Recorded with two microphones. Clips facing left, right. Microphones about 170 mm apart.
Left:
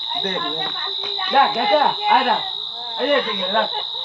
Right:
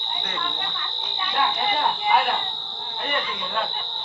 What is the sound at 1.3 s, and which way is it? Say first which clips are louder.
Speech: left 9 dB; 65° left (ahead or behind).